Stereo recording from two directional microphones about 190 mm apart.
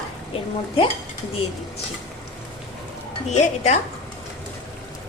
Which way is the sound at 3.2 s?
35° left (ahead or behind).